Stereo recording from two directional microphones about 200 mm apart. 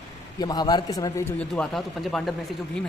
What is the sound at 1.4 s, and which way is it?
Speech, 5° left (ahead or behind).